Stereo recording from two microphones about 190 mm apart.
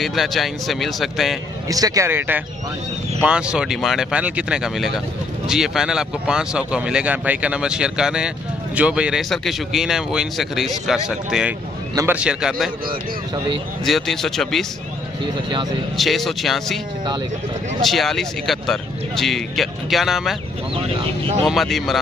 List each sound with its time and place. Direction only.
0.0 s speech: centre (ahead or behind)
1.7 s speech: 20° right (ahead or behind)
11.9 s a man's voice: 15° right (ahead or behind)
12.2 s speech: 5° right (ahead or behind)
12.8 s speech: 25° right (ahead or behind)
13.8 s speech: centre (ahead or behind)
16.0 s speech: centre (ahead or behind)
17.8 s speech: centre (ahead or behind)
21.5 s speech: centre (ahead or behind)